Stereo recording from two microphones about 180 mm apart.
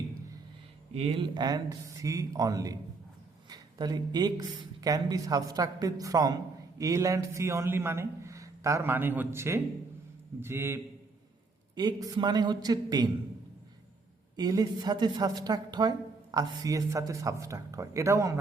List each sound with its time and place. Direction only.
0.9 s a woman's voice: 30° right (ahead or behind); by 10.8 s 15° right (ahead or behind)
11.7 s a woman's voice: 25° right (ahead or behind)
14.3 s a woman's voice: 20° right (ahead or behind)